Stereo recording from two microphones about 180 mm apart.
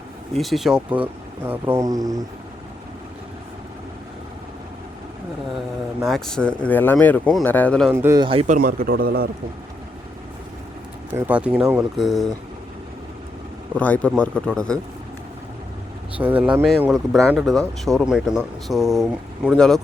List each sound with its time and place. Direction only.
0.3 s speech: centre (ahead or behind); by 2.2 s 20° right (ahead or behind)
6.1 s speech: 5° left (ahead or behind)
7.9 s speech: 15° right (ahead or behind)
8.2 s speech: 30° right (ahead or behind)
8.4 s a man's voice: 50° right (ahead or behind)
11.1 s speech: 10° right (ahead or behind)
13.7 s speech: 5° left (ahead or behind)
16.1 s speech: 10° right (ahead or behind)